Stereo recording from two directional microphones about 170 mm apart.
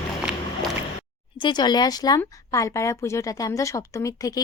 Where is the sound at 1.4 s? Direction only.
25° left (ahead or behind).